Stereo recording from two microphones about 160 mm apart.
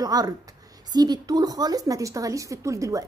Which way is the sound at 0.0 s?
25° right (ahead or behind).